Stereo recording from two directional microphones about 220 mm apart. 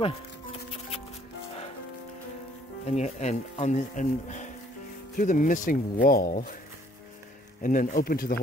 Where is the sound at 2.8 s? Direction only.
30° left (ahead or behind).